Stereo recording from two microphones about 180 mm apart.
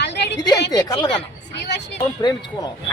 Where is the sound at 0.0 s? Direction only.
75° left (ahead or behind).